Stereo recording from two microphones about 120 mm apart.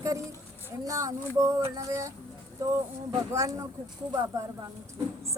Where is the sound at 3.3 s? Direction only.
25° right (ahead or behind).